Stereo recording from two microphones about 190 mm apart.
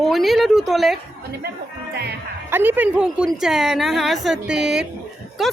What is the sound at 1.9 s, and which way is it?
Speech, 60° right (ahead or behind).